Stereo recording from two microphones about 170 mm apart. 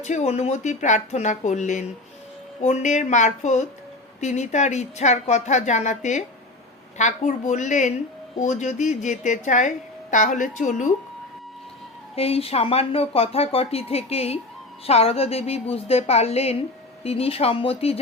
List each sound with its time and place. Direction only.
0.0 s a woman's voice: 40° left (ahead or behind)
12.1 s speech: 35° left (ahead or behind)